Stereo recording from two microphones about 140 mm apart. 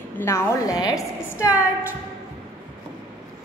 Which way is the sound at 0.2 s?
20° left (ahead or behind).